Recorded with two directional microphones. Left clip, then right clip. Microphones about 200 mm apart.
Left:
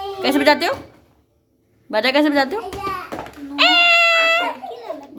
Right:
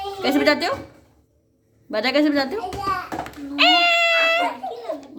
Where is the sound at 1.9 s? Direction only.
25° left (ahead or behind).